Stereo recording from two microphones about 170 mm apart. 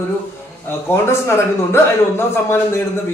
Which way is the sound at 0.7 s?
15° left (ahead or behind).